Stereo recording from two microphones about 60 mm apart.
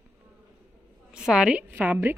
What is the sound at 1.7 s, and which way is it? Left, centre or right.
Speech, right.